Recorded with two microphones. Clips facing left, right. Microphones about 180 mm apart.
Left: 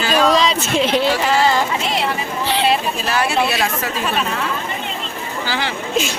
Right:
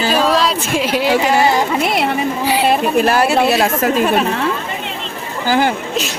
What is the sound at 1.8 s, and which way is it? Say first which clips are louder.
Speech: right 5 dB; 60° right (ahead or behind).